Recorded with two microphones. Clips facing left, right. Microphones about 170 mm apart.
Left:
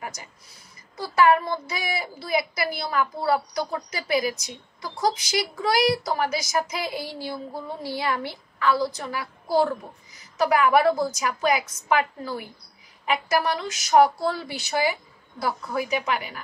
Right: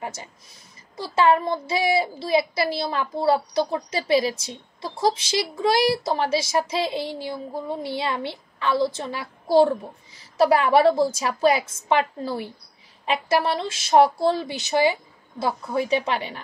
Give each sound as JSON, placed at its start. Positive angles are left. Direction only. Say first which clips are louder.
{"t": 0.0, "sound": "a woman's voice", "louder": "right 3 dB", "side_deg": -25}